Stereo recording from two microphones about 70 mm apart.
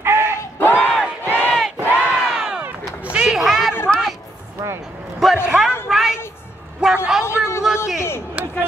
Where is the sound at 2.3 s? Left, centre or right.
Centre.